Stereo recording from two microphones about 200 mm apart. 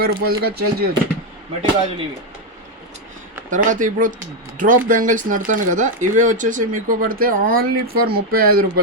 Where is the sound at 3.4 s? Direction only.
40° right (ahead or behind).